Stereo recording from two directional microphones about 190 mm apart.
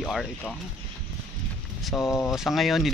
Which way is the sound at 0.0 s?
Centre (ahead or behind).